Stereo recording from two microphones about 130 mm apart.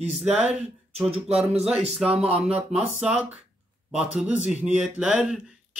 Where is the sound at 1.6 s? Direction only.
50° right (ahead or behind).